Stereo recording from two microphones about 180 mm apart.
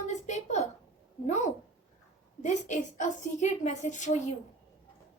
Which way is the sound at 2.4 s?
40° left (ahead or behind).